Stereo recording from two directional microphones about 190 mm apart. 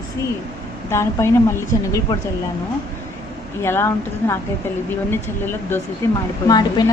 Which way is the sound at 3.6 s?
10° left (ahead or behind).